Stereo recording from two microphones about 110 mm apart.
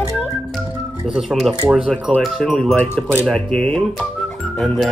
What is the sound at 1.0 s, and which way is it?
Speech, centre (ahead or behind).